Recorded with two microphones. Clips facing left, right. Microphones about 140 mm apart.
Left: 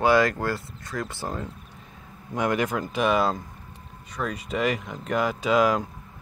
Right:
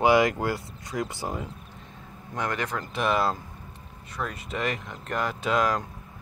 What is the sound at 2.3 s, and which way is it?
Speech, 10° left (ahead or behind).